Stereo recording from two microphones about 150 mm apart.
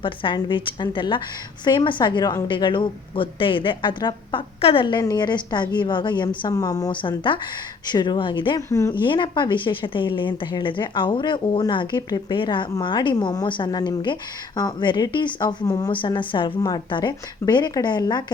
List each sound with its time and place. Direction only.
0.0 s speech: 35° left (ahead or behind)